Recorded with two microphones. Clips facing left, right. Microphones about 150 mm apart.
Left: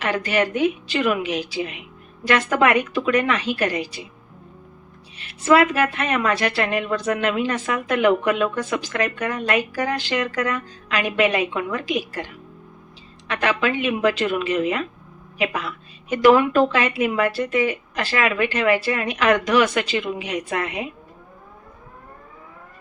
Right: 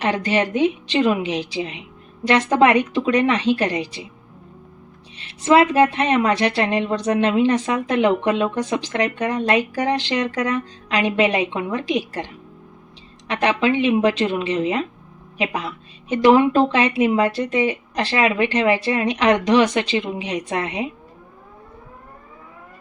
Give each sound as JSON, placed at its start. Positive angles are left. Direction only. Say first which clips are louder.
{"t": 0.0, "sound": "a woman's voice", "louder": "right 1 dB", "side_deg": -25}
{"t": 5.2, "sound": "a woman's voice", "louder": "right 1 dB", "side_deg": -25}